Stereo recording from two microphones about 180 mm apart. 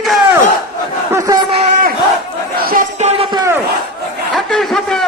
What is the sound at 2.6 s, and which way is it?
Crowd, 55° right (ahead or behind).